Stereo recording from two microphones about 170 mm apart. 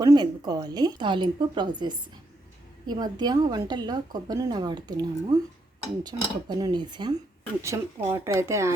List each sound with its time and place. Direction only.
0.0 s a woman's voice: 20° right (ahead or behind)
7.6 s speech: 15° right (ahead or behind)